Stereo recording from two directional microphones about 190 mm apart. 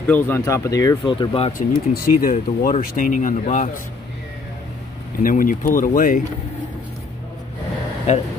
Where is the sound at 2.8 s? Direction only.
50° left (ahead or behind).